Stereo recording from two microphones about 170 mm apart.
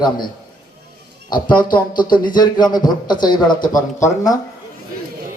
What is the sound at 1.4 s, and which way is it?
A man's voice, 25° left (ahead or behind).